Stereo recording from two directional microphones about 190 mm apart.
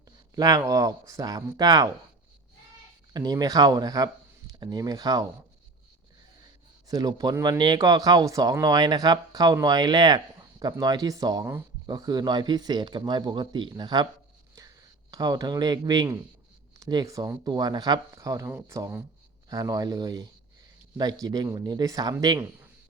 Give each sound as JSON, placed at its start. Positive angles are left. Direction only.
{"t": 0.3, "sound": "speech", "side_deg": -20}
{"t": 3.1, "sound": "speech", "side_deg": -20}
{"t": 6.8, "sound": "speech", "side_deg": -20}
{"t": 15.1, "sound": "speech", "side_deg": -20}